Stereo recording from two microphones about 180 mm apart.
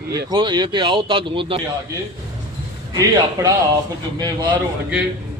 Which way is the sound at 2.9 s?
20° right (ahead or behind).